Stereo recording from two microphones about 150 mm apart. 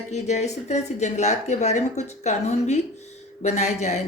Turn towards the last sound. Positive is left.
turn(degrees=50)  # may be behind; listen again after turning